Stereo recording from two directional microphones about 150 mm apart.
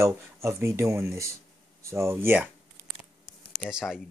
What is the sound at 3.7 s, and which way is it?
Speech, 5° right (ahead or behind).